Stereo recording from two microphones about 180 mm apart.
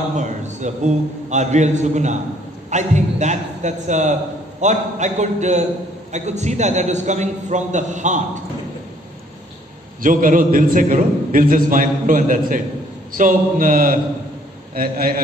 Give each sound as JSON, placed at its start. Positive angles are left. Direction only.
{"t": 0.1, "sound": "a man's voice", "side_deg": -40}
{"t": 10.0, "sound": "a man's voice", "side_deg": -50}